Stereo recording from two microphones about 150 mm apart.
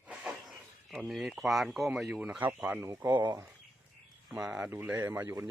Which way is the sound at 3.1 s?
30° right (ahead or behind).